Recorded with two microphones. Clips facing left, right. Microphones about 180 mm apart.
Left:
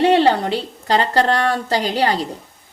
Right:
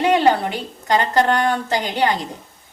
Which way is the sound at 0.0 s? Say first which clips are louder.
Left 2 dB; 30° left (ahead or behind).